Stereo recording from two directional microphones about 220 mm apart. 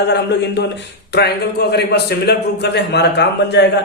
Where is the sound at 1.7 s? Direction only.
45° left (ahead or behind).